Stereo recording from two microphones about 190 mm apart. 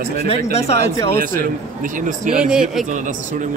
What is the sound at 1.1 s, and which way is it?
A man's voice, 50° right (ahead or behind).